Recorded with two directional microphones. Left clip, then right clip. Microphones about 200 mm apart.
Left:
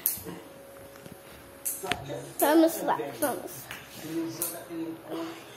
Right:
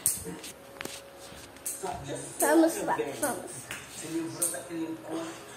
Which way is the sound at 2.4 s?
15° left (ahead or behind).